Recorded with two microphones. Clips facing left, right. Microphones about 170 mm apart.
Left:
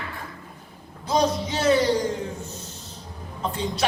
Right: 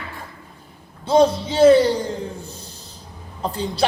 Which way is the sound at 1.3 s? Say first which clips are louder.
Right 10 dB; 30° right (ahead or behind).